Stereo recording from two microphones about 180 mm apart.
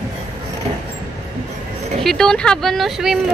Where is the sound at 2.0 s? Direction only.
5° left (ahead or behind).